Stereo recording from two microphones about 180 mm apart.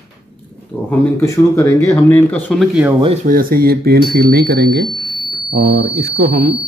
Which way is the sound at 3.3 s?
55° right (ahead or behind).